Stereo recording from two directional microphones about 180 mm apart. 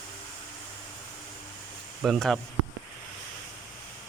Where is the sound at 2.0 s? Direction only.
Centre (ahead or behind).